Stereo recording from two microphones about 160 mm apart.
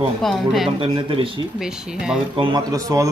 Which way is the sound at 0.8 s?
35° right (ahead or behind).